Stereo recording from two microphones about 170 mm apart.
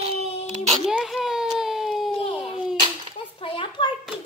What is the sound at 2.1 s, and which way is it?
Baby cry, 35° left (ahead or behind).